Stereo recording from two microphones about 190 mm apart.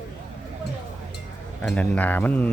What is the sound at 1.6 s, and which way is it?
Speech, 5° left (ahead or behind).